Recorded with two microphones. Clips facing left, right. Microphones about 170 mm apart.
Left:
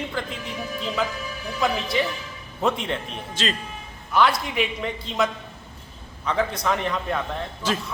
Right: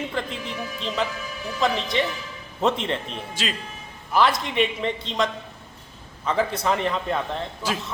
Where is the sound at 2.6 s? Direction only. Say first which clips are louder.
Right 1 dB; centre (ahead or behind).